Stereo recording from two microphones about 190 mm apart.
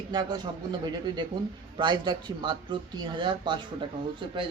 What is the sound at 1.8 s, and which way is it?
Speech, 25° right (ahead or behind).